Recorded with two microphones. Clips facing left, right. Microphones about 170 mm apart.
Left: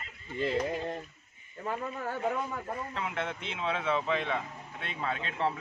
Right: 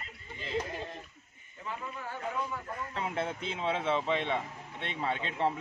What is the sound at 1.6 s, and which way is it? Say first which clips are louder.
A man's voice: left 5 dB; 45° left (ahead or behind).